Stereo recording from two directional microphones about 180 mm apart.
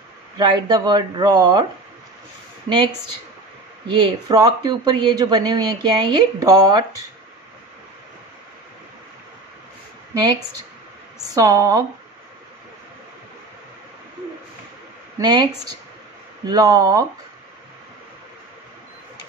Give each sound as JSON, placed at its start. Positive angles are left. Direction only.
{"t": 0.4, "sound": "speech", "side_deg": -25}
{"t": 3.8, "sound": "speech", "side_deg": -25}
{"t": 11.3, "sound": "speech", "side_deg": -20}
{"t": 15.1, "sound": "speech", "side_deg": -20}
{"t": 16.4, "sound": "speech", "side_deg": -20}